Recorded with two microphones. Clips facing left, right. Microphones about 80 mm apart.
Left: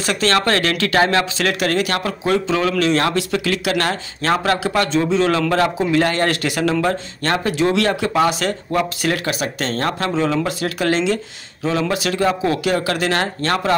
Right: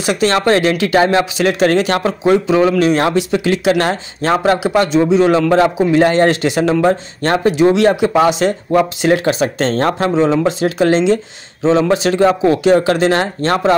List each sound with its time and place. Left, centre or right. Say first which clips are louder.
0.0 s speech: right 4 dB; centre